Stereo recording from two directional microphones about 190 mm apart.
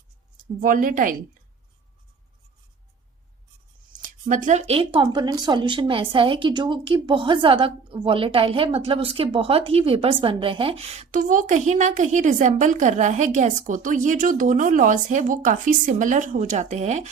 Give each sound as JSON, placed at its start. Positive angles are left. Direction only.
{"t": 0.6, "sound": "speech", "side_deg": -45}
{"t": 4.3, "sound": "speech", "side_deg": -40}